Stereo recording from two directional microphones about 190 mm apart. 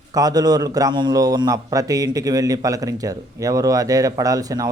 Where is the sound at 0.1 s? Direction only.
20° right (ahead or behind).